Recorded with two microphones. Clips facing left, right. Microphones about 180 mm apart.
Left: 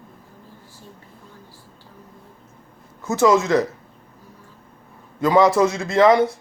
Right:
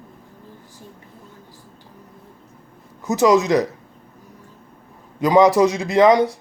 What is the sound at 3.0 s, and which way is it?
Speech, 15° right (ahead or behind).